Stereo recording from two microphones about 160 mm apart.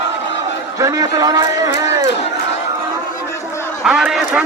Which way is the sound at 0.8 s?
20° right (ahead or behind).